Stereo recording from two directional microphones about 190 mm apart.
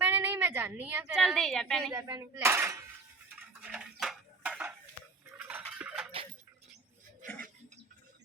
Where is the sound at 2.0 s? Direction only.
15° right (ahead or behind).